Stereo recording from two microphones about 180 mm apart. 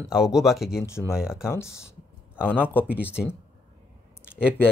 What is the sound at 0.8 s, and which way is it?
Speech, 15° left (ahead or behind).